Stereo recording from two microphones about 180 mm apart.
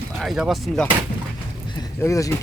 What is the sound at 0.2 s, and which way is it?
Speech, centre (ahead or behind).